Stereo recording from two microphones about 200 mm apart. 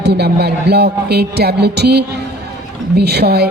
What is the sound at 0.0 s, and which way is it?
A woman's voice, 55° right (ahead or behind).